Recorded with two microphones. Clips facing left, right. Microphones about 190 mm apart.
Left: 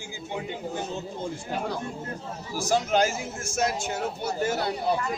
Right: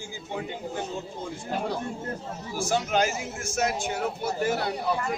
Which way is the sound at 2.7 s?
35° left (ahead or behind).